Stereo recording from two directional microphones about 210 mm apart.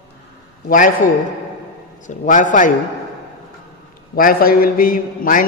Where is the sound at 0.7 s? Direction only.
40° left (ahead or behind).